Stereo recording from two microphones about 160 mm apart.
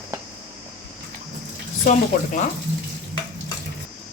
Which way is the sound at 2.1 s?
55° left (ahead or behind).